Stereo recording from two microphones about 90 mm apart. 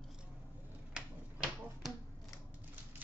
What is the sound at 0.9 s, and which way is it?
Finger snapping, 10° right (ahead or behind).